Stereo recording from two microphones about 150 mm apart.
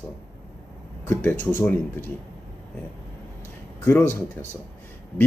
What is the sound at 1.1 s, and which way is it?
Speech, 15° left (ahead or behind).